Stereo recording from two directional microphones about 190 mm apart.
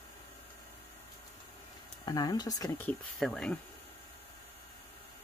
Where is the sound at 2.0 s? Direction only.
20° left (ahead or behind); by 3.6 s 5° left (ahead or behind).